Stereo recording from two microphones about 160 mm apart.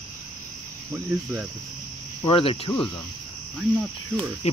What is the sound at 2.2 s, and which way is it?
Speech, 35° left (ahead or behind).